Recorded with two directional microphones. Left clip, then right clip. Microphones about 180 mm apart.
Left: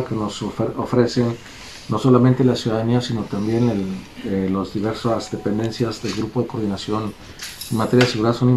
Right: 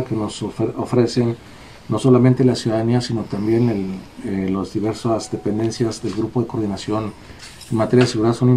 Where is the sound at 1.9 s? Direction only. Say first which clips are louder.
Right 1 dB; 25° right (ahead or behind).